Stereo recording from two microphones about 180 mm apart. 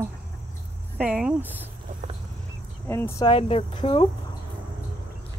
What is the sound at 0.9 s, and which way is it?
Speech, 5° right (ahead or behind).